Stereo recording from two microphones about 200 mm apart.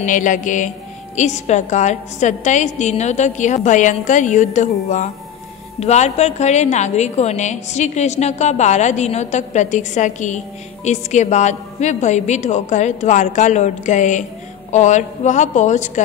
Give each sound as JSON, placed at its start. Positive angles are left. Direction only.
{"t": 0.0, "sound": "a woman's voice", "side_deg": 40}